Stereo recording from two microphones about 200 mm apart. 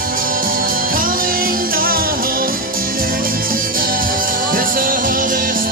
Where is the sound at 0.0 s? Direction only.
45° right (ahead or behind).